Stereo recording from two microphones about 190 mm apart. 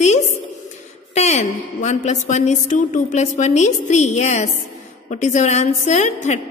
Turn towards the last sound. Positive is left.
turn(degrees=40)  # may be behind; listen again after turning